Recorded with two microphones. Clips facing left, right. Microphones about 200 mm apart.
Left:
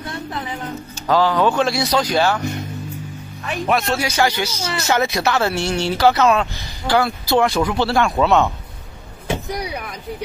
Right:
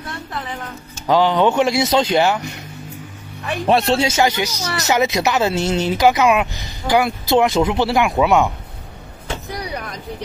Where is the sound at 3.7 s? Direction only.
30° right (ahead or behind); by 8.5 s 15° right (ahead or behind).